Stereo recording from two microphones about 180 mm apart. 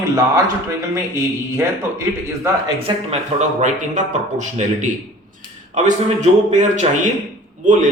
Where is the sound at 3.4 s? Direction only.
40° right (ahead or behind).